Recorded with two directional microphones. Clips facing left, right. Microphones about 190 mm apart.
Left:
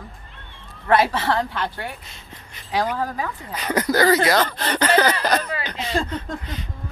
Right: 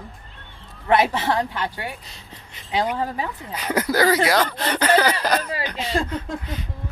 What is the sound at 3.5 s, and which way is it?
Speech, 10° right (ahead or behind).